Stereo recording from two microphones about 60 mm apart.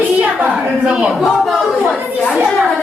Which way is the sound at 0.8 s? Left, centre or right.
Centre.